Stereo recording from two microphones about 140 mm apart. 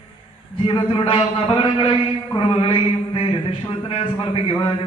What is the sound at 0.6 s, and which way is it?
A man's voice, 35° left (ahead or behind).